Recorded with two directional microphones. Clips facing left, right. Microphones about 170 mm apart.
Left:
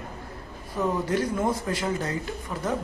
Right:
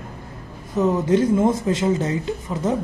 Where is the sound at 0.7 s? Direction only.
25° right (ahead or behind).